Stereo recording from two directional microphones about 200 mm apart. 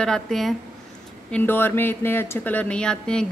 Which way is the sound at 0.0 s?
5° left (ahead or behind).